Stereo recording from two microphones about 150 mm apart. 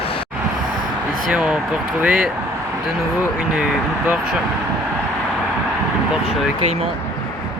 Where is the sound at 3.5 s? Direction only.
10° right (ahead or behind).